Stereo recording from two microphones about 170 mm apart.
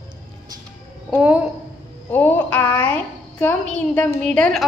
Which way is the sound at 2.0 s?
10° left (ahead or behind).